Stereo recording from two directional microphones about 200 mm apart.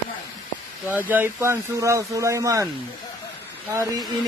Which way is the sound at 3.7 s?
15° right (ahead or behind).